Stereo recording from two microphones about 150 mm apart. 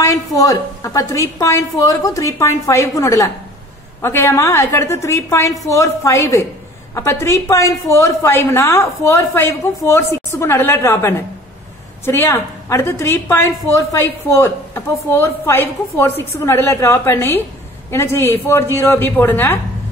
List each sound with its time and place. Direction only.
0.0 s a woman's voice: 25° left (ahead or behind)